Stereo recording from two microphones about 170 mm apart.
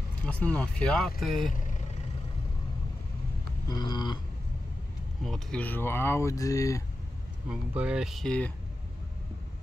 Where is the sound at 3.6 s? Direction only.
25° left (ahead or behind).